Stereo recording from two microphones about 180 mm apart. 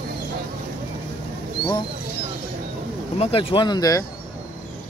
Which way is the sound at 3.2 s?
30° left (ahead or behind).